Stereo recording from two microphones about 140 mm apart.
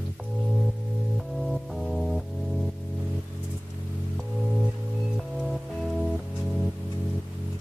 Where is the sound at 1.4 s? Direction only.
Centre (ahead or behind).